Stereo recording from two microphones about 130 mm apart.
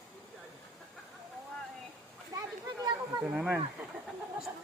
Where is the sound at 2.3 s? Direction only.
30° right (ahead or behind).